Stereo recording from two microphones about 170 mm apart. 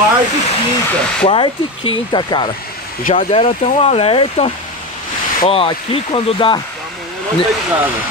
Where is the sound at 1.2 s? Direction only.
30° left (ahead or behind).